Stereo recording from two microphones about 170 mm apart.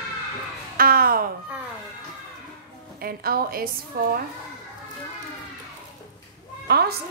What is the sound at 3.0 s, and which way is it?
Speech, 60° right (ahead or behind).